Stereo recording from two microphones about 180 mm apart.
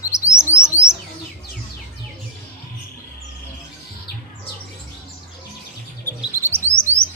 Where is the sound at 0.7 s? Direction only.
15° left (ahead or behind).